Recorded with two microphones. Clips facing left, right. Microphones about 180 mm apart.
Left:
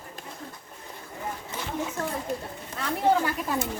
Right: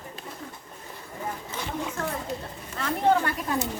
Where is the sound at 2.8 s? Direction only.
5° left (ahead or behind).